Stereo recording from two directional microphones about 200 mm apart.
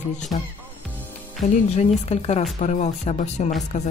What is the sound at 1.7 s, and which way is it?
Speech, 30° left (ahead or behind).